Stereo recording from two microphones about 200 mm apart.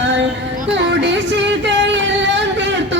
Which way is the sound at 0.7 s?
65° right (ahead or behind).